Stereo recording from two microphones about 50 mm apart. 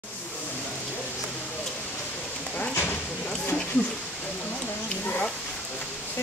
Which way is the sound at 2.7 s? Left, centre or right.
Left.